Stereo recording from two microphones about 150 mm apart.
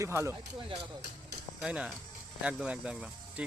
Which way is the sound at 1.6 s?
5° right (ahead or behind).